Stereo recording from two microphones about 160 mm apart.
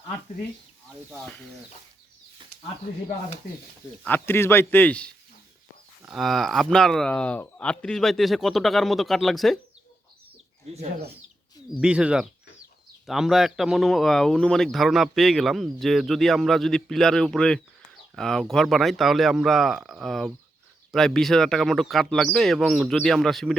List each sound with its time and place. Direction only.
3.4 s speech: 90° left
4.0 s speech: 15° left (ahead or behind)
10.7 s speech: 40° right (ahead or behind)
11.8 s speech: 5° right (ahead or behind)